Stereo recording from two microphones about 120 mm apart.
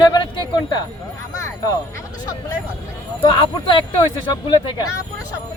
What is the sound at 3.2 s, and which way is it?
Speech, 35° left (ahead or behind).